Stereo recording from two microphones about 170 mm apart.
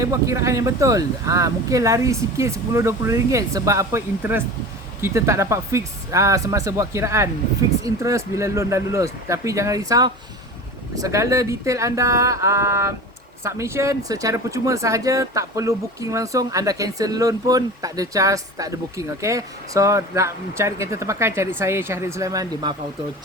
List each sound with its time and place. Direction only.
0.0 s speech: 20° right (ahead or behind)